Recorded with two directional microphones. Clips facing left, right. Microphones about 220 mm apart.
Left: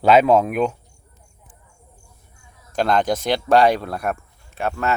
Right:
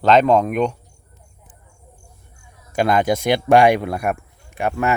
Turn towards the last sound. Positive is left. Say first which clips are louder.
# right 2 dB
turn(degrees=-15)  # may be behind; listen again after turning